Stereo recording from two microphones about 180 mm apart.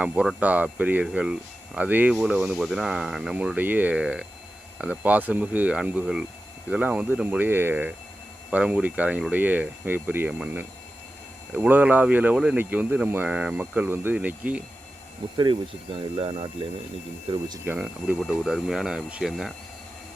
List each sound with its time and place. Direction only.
0.0 s speech: 5° right (ahead or behind)
15.2 s speech: 30° right (ahead or behind)
17.7 s speech: 5° right (ahead or behind)